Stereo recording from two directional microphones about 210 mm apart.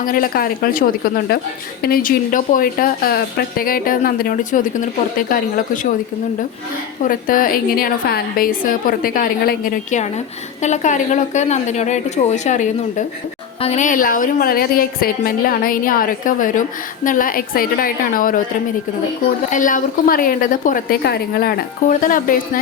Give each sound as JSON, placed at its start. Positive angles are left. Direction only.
{"t": 0.0, "sound": "a woman's voice", "side_deg": 45}
{"t": 7.1, "sound": "a woman's voice", "side_deg": 40}
{"t": 19.5, "sound": "a woman's voice", "side_deg": 40}